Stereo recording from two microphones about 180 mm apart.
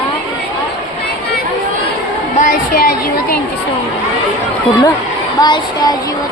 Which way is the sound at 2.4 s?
50° left (ahead or behind).